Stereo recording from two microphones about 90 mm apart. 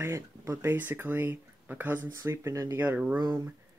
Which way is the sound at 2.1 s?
35° right (ahead or behind).